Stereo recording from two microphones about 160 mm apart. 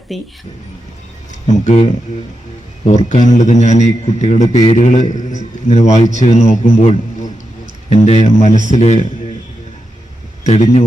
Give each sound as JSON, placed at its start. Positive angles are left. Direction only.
{"t": 0.1, "sound": "speech", "side_deg": 0}
{"t": 1.3, "sound": "speech", "side_deg": 45}
{"t": 2.8, "sound": "a man's voice", "side_deg": 50}
{"t": 10.4, "sound": "a man's voice", "side_deg": 45}